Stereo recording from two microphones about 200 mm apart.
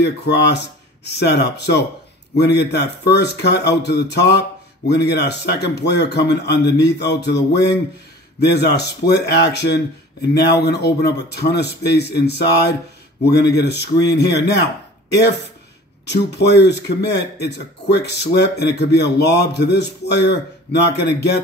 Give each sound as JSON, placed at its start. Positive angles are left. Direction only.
{"t": 0.0, "sound": "a man's voice", "side_deg": 55}
{"t": 16.1, "sound": "a man's voice", "side_deg": 55}